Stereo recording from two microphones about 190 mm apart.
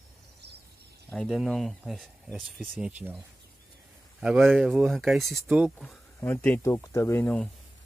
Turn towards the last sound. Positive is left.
turn(degrees=10)  # may be behind; listen again after turning